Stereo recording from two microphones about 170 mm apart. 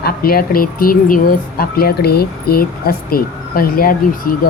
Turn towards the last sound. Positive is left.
turn(degrees=60)  # may be behind; listen again after turning